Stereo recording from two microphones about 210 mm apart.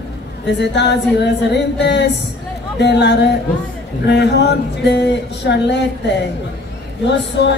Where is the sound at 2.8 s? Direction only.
55° left (ahead or behind).